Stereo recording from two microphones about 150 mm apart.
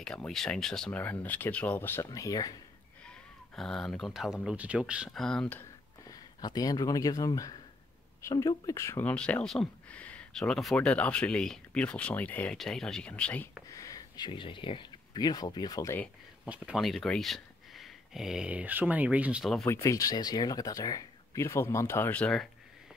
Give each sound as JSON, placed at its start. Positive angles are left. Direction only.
{"t": 0.0, "sound": "speech", "side_deg": 5}
{"t": 3.1, "sound": "speech", "side_deg": 5}
{"t": 6.0, "sound": "speech", "side_deg": 25}
{"t": 13.7, "sound": "speech", "side_deg": 20}
{"t": 16.4, "sound": "speech", "side_deg": -10}
{"t": 19.6, "sound": "speech", "side_deg": 20}